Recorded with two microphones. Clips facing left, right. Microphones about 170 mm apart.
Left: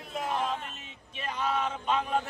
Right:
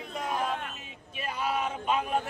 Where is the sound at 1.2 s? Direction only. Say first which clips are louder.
Even; 10° right (ahead or behind).